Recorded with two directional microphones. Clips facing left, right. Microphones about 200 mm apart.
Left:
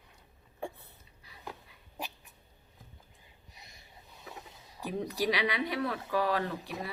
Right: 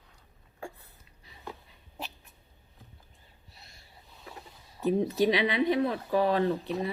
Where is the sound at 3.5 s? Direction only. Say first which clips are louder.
Even; 15° left (ahead or behind).